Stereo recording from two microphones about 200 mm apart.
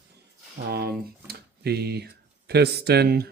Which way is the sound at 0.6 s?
55° right (ahead or behind).